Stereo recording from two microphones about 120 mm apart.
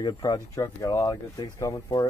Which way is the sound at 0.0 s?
35° left (ahead or behind).